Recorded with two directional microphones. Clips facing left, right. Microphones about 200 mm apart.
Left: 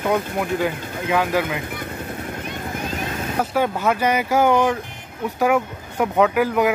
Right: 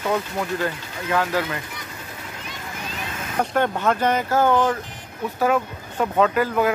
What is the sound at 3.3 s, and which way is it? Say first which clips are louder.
Speech: even; 5° left (ahead or behind).